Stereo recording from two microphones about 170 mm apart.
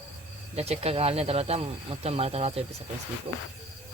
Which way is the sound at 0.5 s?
40° right (ahead or behind).